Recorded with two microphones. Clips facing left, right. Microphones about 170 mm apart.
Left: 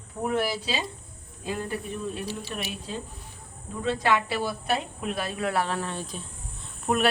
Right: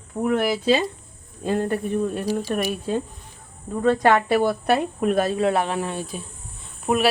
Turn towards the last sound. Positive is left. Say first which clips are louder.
# right 4 dB
turn(degrees=-5)  # may be behind; listen again after turning